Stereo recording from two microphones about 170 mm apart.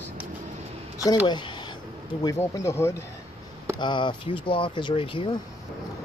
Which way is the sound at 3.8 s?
30° left (ahead or behind).